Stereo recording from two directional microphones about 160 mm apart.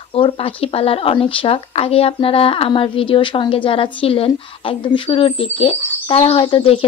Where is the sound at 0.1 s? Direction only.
35° left (ahead or behind).